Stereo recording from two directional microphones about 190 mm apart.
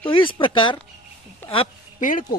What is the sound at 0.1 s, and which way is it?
Speech, 25° left (ahead or behind).